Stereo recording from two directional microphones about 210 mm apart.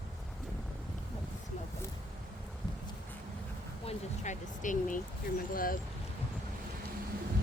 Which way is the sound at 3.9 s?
35° left (ahead or behind).